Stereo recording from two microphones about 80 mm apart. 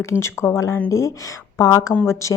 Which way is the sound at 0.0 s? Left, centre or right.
Left.